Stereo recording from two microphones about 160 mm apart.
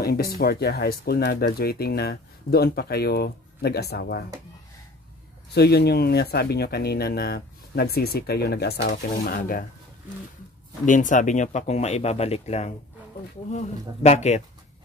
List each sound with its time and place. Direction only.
0.0 s speech: 75° left (ahead or behind)
5.5 s speech: 90° left; by 9.7 s 60° left (ahead or behind)
10.9 s speech: 55° left (ahead or behind)